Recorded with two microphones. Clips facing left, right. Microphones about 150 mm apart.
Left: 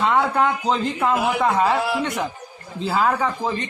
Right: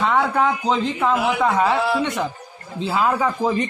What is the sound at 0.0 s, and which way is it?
A man's voice, centre (ahead or behind).